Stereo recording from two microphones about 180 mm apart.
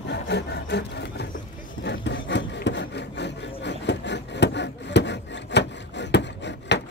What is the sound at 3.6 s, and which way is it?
Wood, 75° left (ahead or behind).